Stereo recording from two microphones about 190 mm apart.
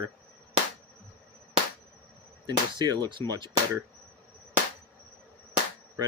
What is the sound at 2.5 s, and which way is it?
Speech, 20° right (ahead or behind).